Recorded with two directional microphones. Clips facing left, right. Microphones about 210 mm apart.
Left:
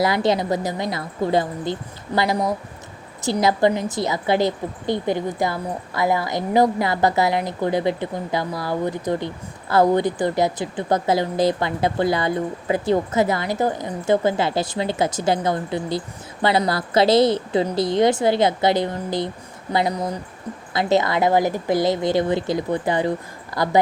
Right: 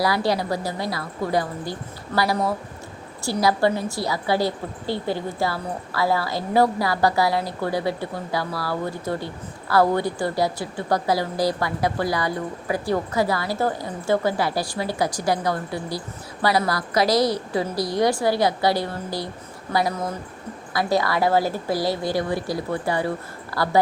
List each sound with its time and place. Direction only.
0.0 s a woman's voice: 20° left (ahead or behind)